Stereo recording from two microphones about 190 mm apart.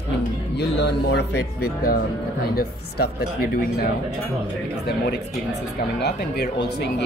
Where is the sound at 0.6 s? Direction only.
60° left (ahead or behind).